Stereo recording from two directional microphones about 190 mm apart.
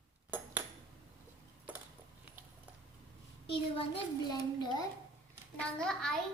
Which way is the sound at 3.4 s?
30° left (ahead or behind).